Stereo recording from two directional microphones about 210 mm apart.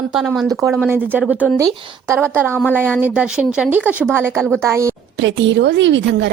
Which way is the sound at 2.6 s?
5° left (ahead or behind).